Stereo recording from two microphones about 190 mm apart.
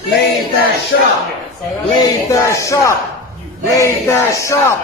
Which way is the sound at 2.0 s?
15° left (ahead or behind).